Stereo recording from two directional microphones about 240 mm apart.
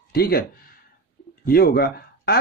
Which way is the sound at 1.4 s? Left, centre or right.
Left.